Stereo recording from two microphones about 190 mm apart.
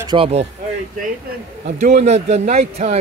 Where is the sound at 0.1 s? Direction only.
30° right (ahead or behind).